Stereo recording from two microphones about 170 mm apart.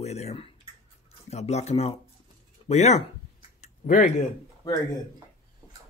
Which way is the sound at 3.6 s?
50° left (ahead or behind).